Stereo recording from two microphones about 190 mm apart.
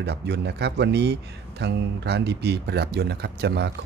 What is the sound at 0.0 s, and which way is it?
Speech, 60° right (ahead or behind).